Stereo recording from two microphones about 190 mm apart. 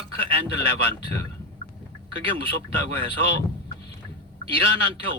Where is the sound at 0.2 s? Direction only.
30° right (ahead or behind).